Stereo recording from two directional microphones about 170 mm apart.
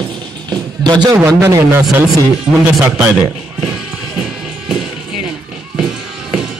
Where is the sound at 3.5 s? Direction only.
5° right (ahead or behind).